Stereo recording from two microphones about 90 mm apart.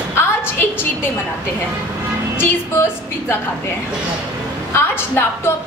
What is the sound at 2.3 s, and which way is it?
A woman's voice, 30° left (ahead or behind).